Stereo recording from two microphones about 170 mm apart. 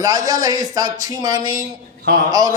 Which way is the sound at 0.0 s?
20° right (ahead or behind).